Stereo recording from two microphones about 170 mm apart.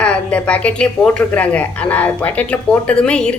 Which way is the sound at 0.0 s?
5° left (ahead or behind).